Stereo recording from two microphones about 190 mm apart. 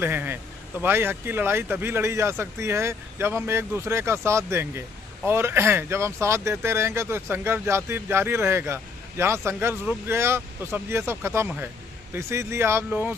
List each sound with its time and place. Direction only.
0.0 s speech: 10° right (ahead or behind)